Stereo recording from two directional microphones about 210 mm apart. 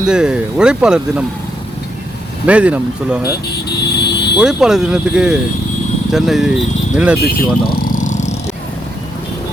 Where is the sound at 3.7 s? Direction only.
55° left (ahead or behind).